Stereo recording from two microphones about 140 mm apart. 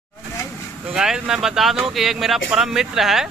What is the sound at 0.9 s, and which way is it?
Speech, 5° right (ahead or behind).